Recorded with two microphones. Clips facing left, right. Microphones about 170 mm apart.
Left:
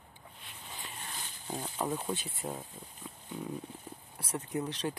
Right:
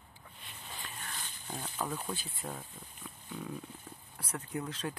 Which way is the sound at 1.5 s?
25° left (ahead or behind).